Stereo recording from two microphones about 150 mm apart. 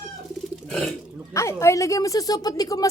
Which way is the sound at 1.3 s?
20° left (ahead or behind).